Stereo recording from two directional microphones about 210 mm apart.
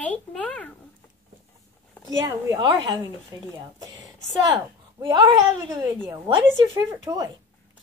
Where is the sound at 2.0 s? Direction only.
15° right (ahead or behind).